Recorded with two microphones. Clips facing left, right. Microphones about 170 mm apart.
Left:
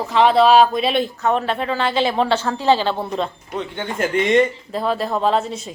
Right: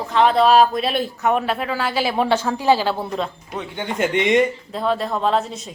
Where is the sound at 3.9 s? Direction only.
20° right (ahead or behind).